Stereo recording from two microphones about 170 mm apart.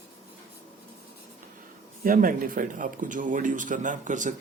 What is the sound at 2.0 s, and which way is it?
Speech, 55° right (ahead or behind).